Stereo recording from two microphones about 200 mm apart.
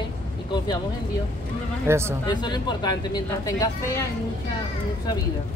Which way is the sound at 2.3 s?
20° left (ahead or behind).